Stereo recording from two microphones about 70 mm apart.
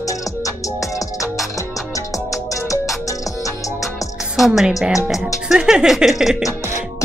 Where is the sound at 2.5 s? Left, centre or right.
Left.